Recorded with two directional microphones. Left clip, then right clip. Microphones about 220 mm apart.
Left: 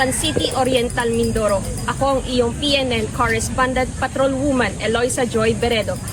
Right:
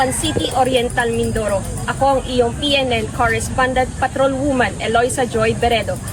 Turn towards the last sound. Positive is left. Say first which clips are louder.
# right 2 dB
turn(degrees=0)  # may be behind; listen again after turning